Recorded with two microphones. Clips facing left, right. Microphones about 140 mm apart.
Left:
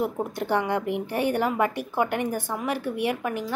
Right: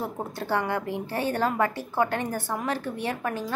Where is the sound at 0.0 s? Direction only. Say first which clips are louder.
Left 5 dB; 15° left (ahead or behind).